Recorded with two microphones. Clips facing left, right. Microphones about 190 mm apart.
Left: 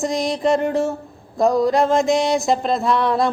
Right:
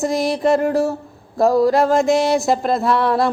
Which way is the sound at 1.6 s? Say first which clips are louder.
Right 2 dB; 20° left (ahead or behind).